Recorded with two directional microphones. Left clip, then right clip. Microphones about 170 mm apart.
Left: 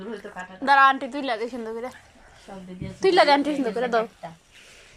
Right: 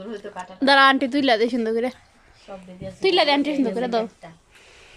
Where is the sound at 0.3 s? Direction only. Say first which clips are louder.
Right 2 dB; 30° right (ahead or behind).